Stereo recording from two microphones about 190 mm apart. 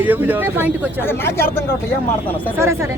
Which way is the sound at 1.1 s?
10° left (ahead or behind).